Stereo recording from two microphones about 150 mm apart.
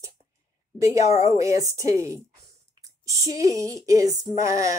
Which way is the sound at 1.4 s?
20° right (ahead or behind).